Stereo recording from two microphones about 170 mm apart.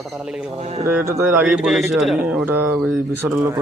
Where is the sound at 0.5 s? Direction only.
40° right (ahead or behind).